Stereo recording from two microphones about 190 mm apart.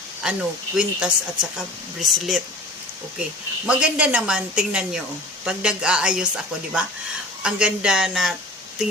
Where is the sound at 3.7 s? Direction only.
5° right (ahead or behind).